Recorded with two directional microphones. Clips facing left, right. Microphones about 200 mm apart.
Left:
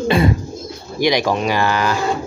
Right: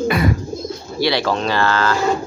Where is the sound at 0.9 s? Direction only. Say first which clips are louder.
Left 2 dB; 15° left (ahead or behind).